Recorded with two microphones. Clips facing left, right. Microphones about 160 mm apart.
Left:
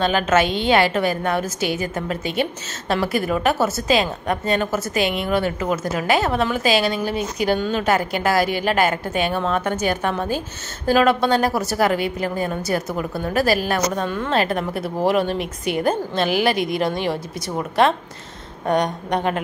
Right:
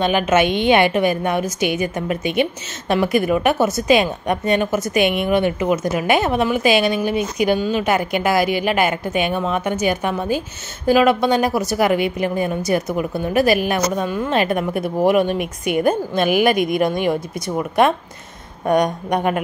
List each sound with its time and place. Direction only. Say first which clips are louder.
0.0 s a woman's voice: right 2 dB; 15° right (ahead or behind)
16.5 s speech: right 4 dB; 50° right (ahead or behind)
18.7 s a woman's voice: right 3 dB; 10° right (ahead or behind)